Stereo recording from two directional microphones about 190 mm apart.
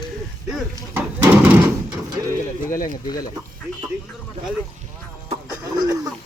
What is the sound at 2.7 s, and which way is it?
Speech, 50° left (ahead or behind).